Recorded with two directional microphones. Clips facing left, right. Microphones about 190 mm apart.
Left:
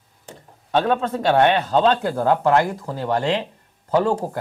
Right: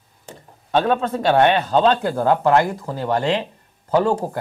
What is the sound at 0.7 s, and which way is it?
Speech, 10° right (ahead or behind).